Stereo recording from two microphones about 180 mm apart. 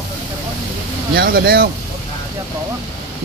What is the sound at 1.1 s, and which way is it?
Speech, 60° right (ahead or behind).